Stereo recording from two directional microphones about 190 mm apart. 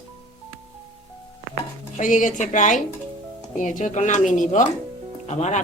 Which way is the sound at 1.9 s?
40° left (ahead or behind).